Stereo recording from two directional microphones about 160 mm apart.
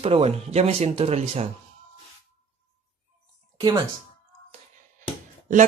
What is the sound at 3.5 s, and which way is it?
Speech, 25° right (ahead or behind).